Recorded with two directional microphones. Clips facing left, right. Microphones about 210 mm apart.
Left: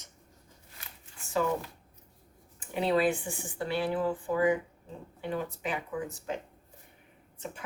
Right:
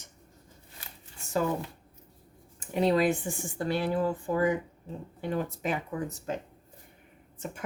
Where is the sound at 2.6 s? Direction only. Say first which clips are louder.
Right 2 dB; 40° right (ahead or behind).